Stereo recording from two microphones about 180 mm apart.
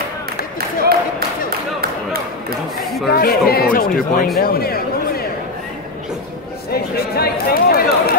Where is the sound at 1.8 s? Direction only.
55° right (ahead or behind).